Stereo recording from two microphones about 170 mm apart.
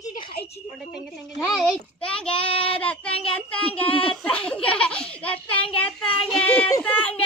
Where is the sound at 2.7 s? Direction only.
5° left (ahead or behind).